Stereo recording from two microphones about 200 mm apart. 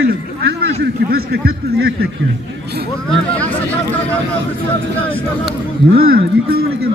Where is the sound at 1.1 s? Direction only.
50° right (ahead or behind).